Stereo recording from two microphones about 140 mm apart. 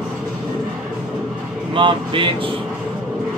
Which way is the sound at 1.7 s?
35° right (ahead or behind).